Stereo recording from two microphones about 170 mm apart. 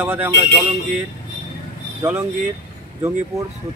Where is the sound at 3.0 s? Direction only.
15° right (ahead or behind).